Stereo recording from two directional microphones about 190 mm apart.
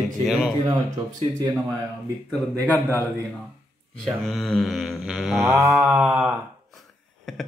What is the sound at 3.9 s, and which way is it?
Speech, centre (ahead or behind).